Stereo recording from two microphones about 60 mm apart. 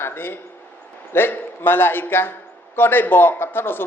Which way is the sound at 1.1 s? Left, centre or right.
Left.